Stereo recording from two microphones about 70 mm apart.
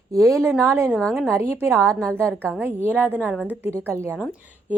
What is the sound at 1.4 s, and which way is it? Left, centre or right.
Speech, right.